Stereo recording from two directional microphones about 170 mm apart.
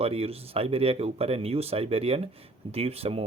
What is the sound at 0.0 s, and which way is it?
Speech, 35° right (ahead or behind).